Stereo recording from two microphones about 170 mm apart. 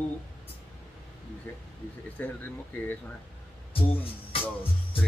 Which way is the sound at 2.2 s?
10° left (ahead or behind).